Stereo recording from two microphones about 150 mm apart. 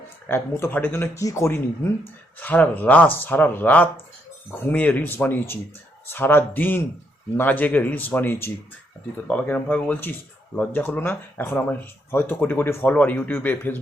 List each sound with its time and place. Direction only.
0.3 s speech: 15° left (ahead or behind)